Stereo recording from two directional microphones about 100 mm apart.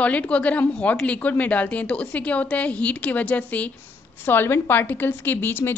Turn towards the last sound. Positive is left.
turn(degrees=20)  # may be behind; listen again after turning